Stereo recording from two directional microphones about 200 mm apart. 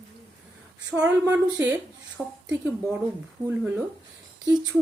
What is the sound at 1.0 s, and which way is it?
Speech, 10° right (ahead or behind).